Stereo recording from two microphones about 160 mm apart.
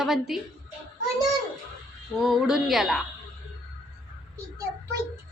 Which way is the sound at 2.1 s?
Centre (ahead or behind).